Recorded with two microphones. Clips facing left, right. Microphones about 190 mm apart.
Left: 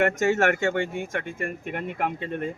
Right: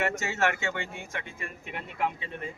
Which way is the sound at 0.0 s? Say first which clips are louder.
Left 7 dB; 50° left (ahead or behind).